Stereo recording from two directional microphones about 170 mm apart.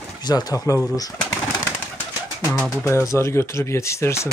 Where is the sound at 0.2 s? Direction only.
25° left (ahead or behind).